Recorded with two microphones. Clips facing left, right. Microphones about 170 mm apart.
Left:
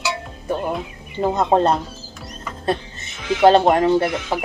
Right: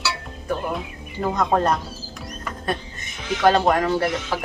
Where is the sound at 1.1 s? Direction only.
25° left (ahead or behind).